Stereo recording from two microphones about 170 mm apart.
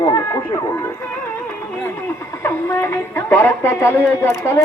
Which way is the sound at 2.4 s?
15° left (ahead or behind).